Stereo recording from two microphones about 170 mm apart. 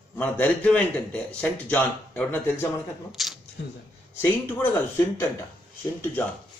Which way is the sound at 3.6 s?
80° left.